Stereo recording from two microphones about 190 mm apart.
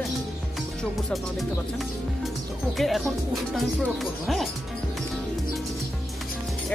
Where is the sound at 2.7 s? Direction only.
Centre (ahead or behind).